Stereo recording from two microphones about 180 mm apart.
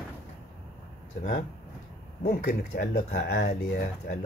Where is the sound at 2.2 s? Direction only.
60° left (ahead or behind).